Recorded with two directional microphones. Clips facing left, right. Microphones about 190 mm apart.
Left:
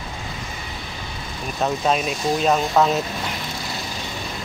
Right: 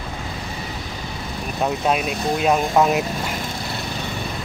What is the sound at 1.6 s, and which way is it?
Speech, 10° right (ahead or behind).